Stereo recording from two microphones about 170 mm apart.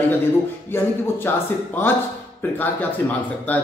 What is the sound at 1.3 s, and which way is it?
Speech, 15° left (ahead or behind).